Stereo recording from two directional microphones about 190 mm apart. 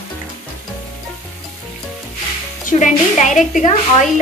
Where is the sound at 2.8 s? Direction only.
40° left (ahead or behind).